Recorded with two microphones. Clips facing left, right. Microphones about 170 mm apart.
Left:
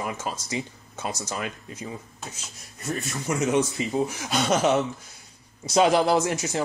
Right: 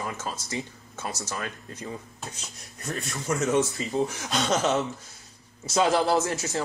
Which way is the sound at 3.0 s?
Centre (ahead or behind).